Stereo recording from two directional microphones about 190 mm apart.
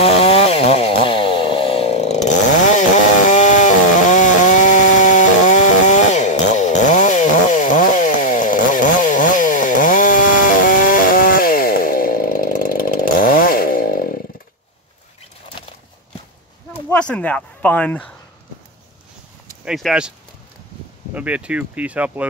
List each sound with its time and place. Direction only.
0.0 s chainsaw: 30° left (ahead or behind); by 14.0 s 50° left (ahead or behind)
16.9 s speech: 5° left (ahead or behind)
19.6 s speech: 5° right (ahead or behind)
21.1 s speech: 5° right (ahead or behind)